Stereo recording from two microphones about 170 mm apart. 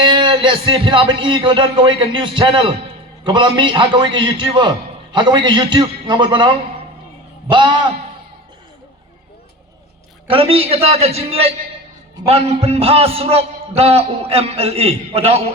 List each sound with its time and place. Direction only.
0.0 s a man's voice: 30° right (ahead or behind)
7.5 s a man's voice: 25° right (ahead or behind)
10.2 s a man's voice: 35° right (ahead or behind)